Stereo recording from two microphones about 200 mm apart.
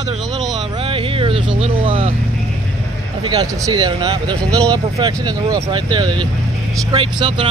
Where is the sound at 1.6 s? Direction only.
25° right (ahead or behind).